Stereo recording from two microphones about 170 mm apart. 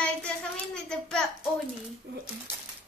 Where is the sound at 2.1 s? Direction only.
80° right.